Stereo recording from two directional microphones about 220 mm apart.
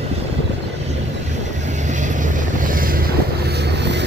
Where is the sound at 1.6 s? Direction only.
35° right (ahead or behind).